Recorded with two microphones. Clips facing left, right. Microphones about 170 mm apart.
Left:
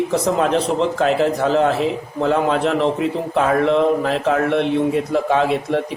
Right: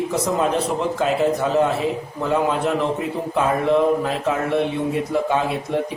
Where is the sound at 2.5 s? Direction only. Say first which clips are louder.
Left 3 dB; 75° left (ahead or behind).